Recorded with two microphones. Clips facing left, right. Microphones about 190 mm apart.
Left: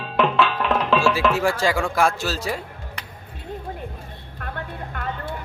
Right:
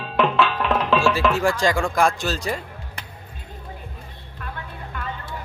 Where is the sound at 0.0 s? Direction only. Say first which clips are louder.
Even; centre (ahead or behind).